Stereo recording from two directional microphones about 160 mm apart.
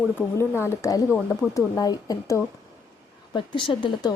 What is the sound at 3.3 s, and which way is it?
Speech, 30° left (ahead or behind).